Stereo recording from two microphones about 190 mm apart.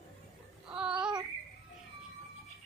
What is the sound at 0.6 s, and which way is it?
Child singing, 5° right (ahead or behind).